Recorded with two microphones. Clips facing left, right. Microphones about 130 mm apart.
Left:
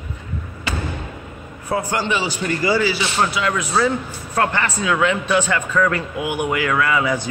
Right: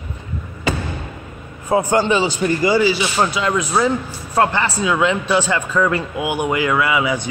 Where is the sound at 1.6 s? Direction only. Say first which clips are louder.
Right 6 dB; 25° right (ahead or behind).